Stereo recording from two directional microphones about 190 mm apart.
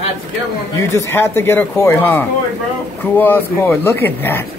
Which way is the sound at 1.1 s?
10° left (ahead or behind).